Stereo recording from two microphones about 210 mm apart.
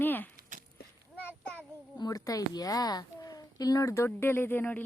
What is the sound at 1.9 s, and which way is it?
A child's voice, 20° left (ahead or behind).